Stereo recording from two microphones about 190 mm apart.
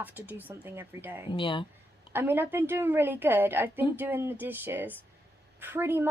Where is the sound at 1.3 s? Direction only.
25° left (ahead or behind).